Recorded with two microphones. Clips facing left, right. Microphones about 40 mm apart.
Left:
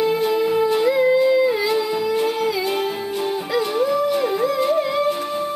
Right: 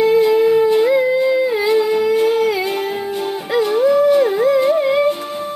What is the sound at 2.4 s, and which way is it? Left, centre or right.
Music, right.